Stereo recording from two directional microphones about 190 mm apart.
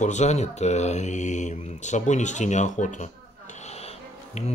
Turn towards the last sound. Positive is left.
turn(degrees=35)  # may be behind; listen again after turning